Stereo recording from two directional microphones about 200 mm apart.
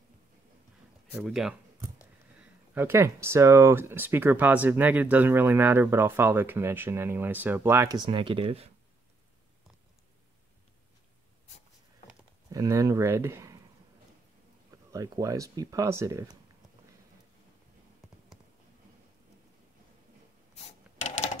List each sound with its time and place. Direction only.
1.2 s speech: centre (ahead or behind)
2.7 s speech: 10° right (ahead or behind); by 8.7 s 30° right (ahead or behind)
12.4 s speech: 15° right (ahead or behind)
14.9 s speech: 15° right (ahead or behind)
20.5 s a sound: 35° left (ahead or behind)